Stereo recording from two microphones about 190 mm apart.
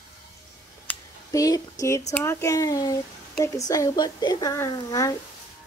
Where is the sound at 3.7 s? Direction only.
20° left (ahead or behind).